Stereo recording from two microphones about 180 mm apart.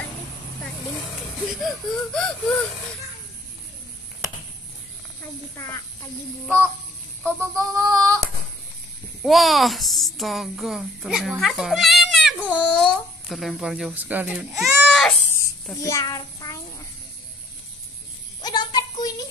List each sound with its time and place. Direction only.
1.6 s speech: centre (ahead or behind)
7.2 s female singing: 15° right (ahead or behind)
9.2 s a woman's voice: centre (ahead or behind)
15.7 s a child's voice: 15° left (ahead or behind)
18.4 s music: 25° left (ahead or behind)